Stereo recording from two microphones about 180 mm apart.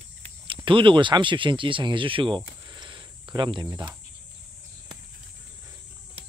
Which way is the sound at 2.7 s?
25° right (ahead or behind).